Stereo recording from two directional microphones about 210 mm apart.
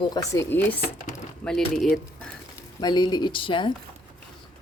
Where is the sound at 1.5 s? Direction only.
Centre (ahead or behind).